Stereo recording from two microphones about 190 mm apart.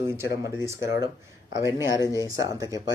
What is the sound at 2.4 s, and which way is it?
Speech, 20° right (ahead or behind).